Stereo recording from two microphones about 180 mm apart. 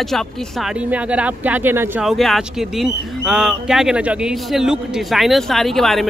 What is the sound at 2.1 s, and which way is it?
A man's voice, centre (ahead or behind).